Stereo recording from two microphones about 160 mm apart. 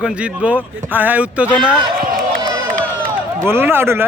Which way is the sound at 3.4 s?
15° right (ahead or behind).